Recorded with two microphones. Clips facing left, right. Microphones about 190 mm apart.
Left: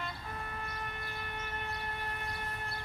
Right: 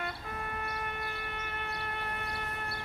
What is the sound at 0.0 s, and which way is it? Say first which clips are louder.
Siren: right 3 dB; 60° right (ahead or behind).